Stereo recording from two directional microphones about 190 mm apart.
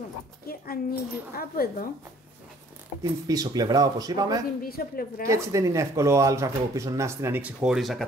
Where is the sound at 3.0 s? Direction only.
20° right (ahead or behind).